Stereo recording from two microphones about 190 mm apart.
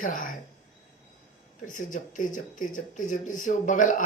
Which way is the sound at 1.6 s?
40° left (ahead or behind).